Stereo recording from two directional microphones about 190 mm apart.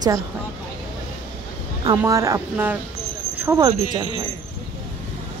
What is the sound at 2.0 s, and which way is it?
Speech, 15° right (ahead or behind).